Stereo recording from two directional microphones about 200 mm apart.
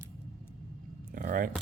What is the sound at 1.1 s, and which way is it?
Speech, 45° right (ahead or behind).